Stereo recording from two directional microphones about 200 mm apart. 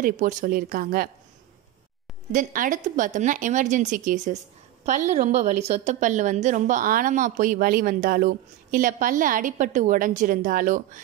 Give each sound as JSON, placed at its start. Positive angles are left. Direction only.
{"t": 0.0, "sound": "speech", "side_deg": -40}
{"t": 2.3, "sound": "a woman's voice", "side_deg": -40}